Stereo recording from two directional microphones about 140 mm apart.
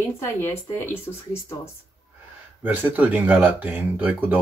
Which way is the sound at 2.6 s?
15° right (ahead or behind).